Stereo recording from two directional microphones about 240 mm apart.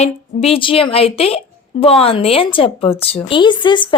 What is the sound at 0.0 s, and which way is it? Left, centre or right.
A woman's voice, left.